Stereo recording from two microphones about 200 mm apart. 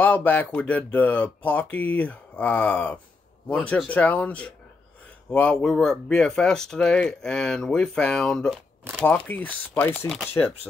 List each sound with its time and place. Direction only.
0.0 s speech: 10° left (ahead or behind)